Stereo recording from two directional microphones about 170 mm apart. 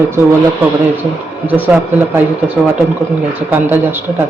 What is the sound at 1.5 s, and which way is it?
Speech, 10° right (ahead or behind).